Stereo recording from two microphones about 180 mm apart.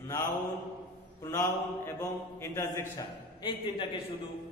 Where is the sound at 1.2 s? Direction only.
15° left (ahead or behind).